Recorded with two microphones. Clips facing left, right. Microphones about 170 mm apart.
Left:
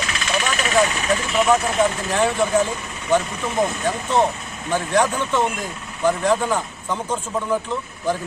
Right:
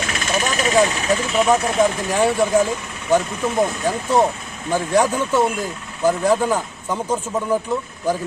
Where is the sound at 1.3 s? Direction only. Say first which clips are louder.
Right 1 dB; 20° right (ahead or behind).